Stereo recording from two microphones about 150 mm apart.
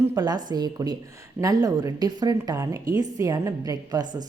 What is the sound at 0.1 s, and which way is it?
A woman's voice, 25° right (ahead or behind).